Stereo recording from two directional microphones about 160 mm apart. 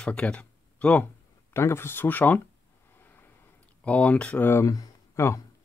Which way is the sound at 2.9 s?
15° left (ahead or behind).